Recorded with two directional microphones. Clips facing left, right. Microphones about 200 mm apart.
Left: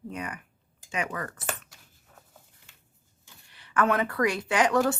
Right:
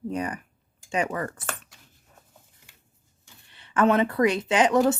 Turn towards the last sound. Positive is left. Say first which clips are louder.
# right 3 dB
turn(degrees=-20)  # may be behind; listen again after turning